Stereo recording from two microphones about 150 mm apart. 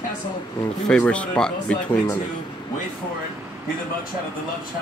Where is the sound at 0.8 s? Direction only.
5° left (ahead or behind).